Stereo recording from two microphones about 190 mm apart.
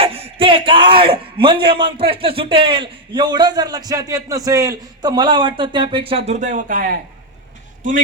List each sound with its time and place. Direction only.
0.0 s a man's voice: 30° right (ahead or behind); by 7.0 s 45° right (ahead or behind)